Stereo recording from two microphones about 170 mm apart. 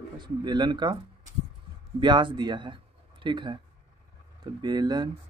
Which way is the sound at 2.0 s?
25° right (ahead or behind).